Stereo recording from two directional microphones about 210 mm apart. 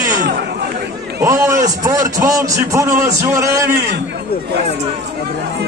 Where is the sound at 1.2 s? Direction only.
15° right (ahead or behind).